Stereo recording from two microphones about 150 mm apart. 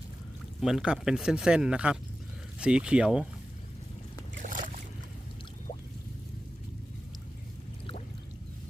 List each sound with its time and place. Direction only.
0.6 s speech: 5° right (ahead or behind)
4.4 s boat: 65° right (ahead or behind)